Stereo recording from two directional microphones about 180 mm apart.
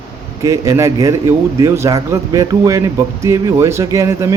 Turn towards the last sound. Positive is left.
turn(degrees=-20)  # may be behind; listen again after turning